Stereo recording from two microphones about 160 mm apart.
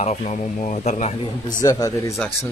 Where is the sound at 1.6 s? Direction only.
20° left (ahead or behind).